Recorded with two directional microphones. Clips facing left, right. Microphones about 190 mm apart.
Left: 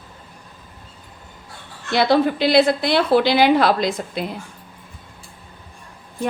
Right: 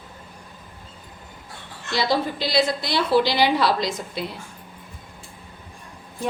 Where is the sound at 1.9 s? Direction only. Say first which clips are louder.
Left 6 dB; 60° left (ahead or behind).